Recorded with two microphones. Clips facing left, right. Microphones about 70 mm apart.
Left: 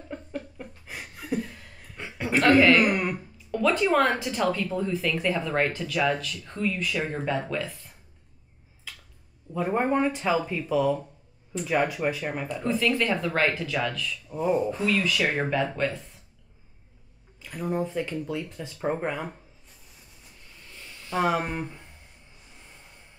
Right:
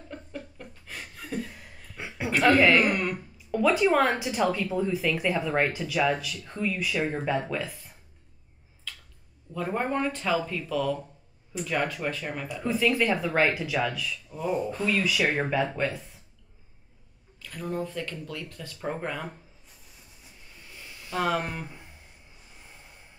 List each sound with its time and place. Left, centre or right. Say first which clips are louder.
0.8 s a sound: left 5 dB; centre
1.5 s chuckle: even; centre
2.5 s a man's voice: left 3 dB; centre
3.2 s speech: right 1 dB; centre
8.9 s finger snapping: right 1 dB; centre
9.5 s speech: left 4 dB; centre
12.6 s speech: right 1 dB; centre
14.3 s speech: left 4 dB; centre
14.9 s speech: right 2 dB; centre
17.4 s speech: left 3 dB; centre
20.5 s a sound: even; centre
21.2 s speech: left 2 dB; centre
21.6 s a sound: left 2 dB; centre